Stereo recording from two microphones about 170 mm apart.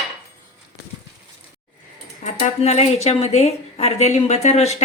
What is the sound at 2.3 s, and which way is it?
Speech, 45° left (ahead or behind).